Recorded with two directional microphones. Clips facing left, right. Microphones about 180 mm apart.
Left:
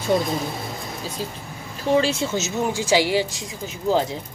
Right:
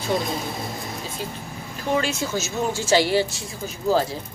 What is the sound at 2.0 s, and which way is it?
Speech, 30° left (ahead or behind).